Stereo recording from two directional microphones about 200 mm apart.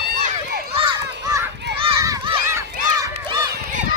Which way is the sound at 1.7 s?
60° right (ahead or behind).